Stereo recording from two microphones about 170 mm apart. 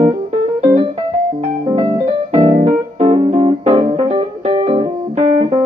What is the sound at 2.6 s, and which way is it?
Music, 30° right (ahead or behind).